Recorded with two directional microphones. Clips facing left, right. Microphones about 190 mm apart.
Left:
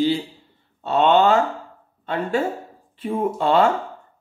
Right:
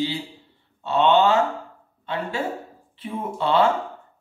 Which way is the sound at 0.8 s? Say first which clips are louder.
Left 2 dB; 45° left (ahead or behind).